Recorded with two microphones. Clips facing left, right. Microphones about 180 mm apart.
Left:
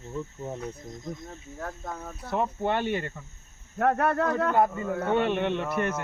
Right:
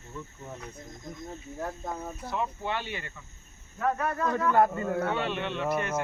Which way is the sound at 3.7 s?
65° left (ahead or behind).